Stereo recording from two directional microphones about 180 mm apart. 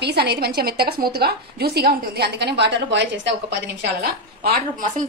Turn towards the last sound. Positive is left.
turn(degrees=-55)  # may be behind; listen again after turning